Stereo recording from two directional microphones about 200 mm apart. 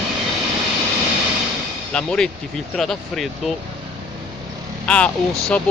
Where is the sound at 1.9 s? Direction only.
5° left (ahead or behind).